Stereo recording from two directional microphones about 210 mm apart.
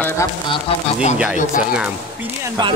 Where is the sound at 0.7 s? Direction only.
25° left (ahead or behind).